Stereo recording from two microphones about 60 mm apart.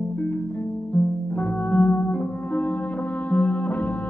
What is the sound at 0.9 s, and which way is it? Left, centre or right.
Music, left.